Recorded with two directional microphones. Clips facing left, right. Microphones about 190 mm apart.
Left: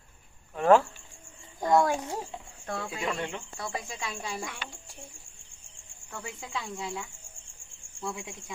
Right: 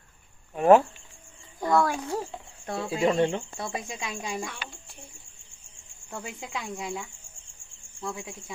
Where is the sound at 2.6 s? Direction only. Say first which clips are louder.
Right 8 dB; 20° right (ahead or behind).